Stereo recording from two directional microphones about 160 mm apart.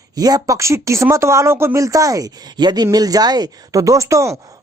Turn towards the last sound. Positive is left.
turn(degrees=-20)  # may be behind; listen again after turning